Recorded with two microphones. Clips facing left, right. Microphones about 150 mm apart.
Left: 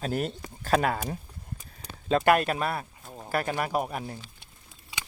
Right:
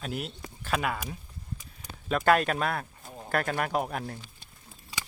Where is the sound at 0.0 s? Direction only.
45° left (ahead or behind).